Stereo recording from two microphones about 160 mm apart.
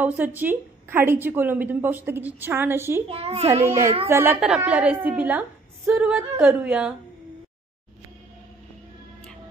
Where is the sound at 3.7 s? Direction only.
20° right (ahead or behind).